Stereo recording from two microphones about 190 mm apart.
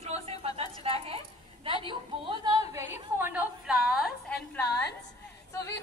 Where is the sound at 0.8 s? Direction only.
30° right (ahead or behind).